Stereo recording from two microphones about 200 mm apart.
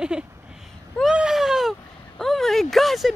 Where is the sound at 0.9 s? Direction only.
5° right (ahead or behind).